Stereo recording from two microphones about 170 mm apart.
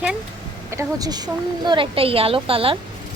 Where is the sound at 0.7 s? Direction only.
20° right (ahead or behind).